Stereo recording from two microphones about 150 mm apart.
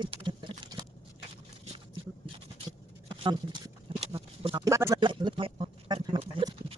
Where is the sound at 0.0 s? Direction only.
35° right (ahead or behind).